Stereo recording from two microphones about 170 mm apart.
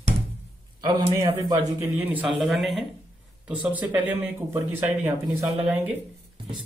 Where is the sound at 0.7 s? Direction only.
25° right (ahead or behind).